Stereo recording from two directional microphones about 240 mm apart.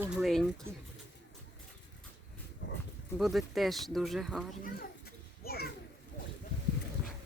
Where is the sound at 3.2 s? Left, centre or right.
Centre.